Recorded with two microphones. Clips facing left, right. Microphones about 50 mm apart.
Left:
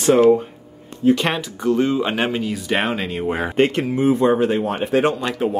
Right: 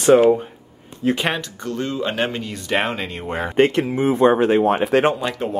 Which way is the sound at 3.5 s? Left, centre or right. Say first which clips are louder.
Right 3 dB; right.